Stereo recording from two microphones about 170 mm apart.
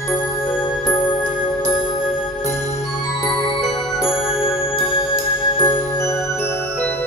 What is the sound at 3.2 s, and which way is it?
Music, 30° left (ahead or behind).